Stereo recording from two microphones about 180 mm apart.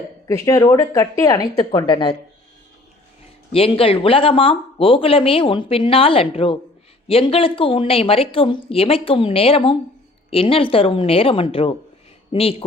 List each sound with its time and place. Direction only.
0.3 s a woman's voice: 15° left (ahead or behind)
3.5 s speech: 30° left (ahead or behind)